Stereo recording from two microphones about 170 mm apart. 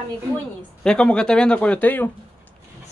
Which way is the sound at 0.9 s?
5° left (ahead or behind).